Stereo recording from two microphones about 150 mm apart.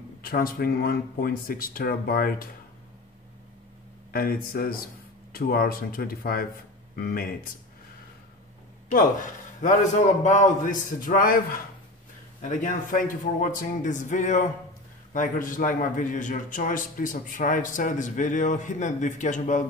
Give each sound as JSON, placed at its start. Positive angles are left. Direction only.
{"t": 0.2, "sound": "speech", "side_deg": 80}
{"t": 4.1, "sound": "speech", "side_deg": 75}
{"t": 8.9, "sound": "a man's voice", "side_deg": 60}
{"t": 12.4, "sound": "a man's voice", "side_deg": 55}